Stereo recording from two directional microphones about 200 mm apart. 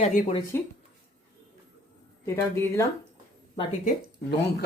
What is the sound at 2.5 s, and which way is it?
Speech, 15° left (ahead or behind).